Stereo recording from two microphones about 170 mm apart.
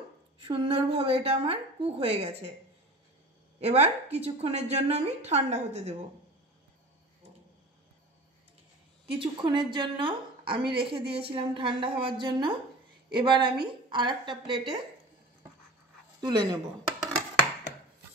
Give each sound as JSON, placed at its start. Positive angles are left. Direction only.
{"t": 0.4, "sound": "a woman's voice", "side_deg": -30}
{"t": 3.6, "sound": "a woman's voice", "side_deg": -40}
{"t": 9.2, "sound": "a woman's voice", "side_deg": -25}
{"t": 16.2, "sound": "a woman's voice", "side_deg": -25}